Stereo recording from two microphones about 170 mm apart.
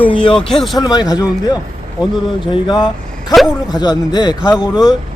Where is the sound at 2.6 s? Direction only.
25° left (ahead or behind).